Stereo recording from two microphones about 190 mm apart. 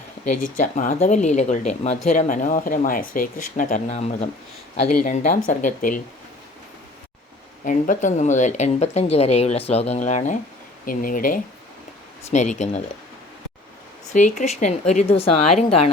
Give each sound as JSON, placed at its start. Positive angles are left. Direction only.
{"t": 0.5, "sound": "speech", "side_deg": 45}
{"t": 7.6, "sound": "speech", "side_deg": 45}
{"t": 14.1, "sound": "speech", "side_deg": 40}